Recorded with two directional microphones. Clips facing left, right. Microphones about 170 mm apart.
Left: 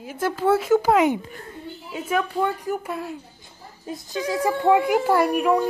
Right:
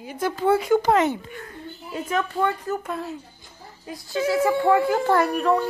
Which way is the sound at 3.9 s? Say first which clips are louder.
Right 3 dB; 20° left (ahead or behind).